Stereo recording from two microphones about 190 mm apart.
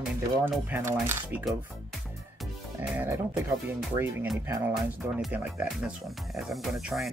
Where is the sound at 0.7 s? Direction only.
10° right (ahead or behind).